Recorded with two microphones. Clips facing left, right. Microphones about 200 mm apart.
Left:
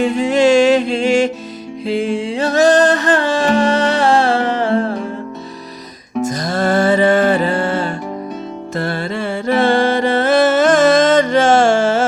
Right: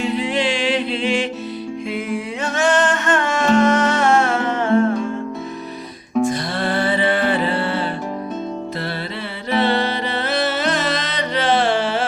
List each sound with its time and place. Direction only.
0.0 s music: 45° left (ahead or behind)
1.9 s music: 30° left (ahead or behind)
6.2 s music: 45° left (ahead or behind)
9.5 s music: 45° left (ahead or behind)